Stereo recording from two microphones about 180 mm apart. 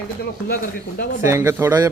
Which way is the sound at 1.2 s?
15° right (ahead or behind).